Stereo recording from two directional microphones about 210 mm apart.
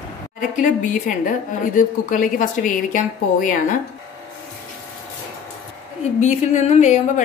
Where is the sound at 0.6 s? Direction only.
40° left (ahead or behind).